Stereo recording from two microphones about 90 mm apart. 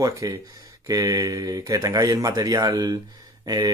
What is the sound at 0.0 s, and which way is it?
Speech, 45° right (ahead or behind).